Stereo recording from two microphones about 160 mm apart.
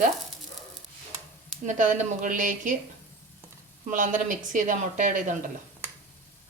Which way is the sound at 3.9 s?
55° right (ahead or behind).